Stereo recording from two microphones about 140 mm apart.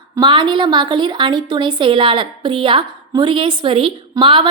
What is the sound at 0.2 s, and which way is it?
A woman's voice, 35° right (ahead or behind).